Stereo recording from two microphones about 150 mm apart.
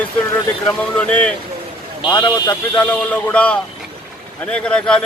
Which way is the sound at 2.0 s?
35° left (ahead or behind).